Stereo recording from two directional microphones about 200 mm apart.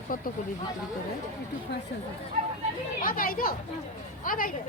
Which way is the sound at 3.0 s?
45° left (ahead or behind).